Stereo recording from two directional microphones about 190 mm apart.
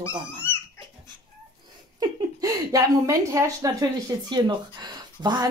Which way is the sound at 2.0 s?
20° right (ahead or behind).